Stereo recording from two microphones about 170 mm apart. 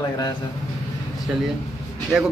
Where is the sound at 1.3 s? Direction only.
5° right (ahead or behind).